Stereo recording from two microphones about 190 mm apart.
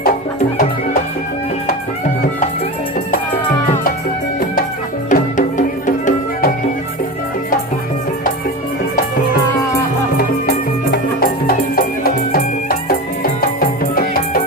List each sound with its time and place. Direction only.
5.0 s music: 45° left (ahead or behind)
10.9 s music: 50° left (ahead or behind)